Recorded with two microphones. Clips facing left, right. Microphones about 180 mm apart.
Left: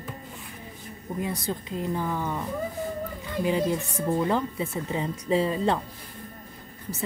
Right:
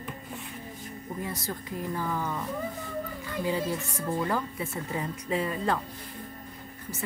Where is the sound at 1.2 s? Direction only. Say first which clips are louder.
Left 6 dB; 20° left (ahead or behind).